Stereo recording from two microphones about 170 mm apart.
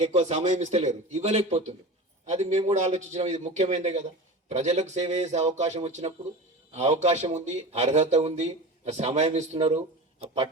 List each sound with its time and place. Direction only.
0.0 s a man's voice: 40° right (ahead or behind)